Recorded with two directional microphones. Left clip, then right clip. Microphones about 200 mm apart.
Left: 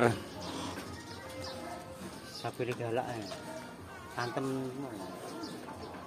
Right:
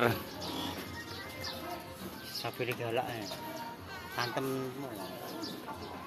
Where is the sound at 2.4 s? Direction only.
40° left (ahead or behind).